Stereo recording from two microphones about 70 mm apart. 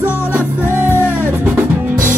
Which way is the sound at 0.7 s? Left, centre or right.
Right.